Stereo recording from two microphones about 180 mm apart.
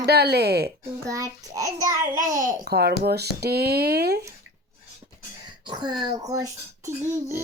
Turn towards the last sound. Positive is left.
turn(degrees=-15)  # may be behind; listen again after turning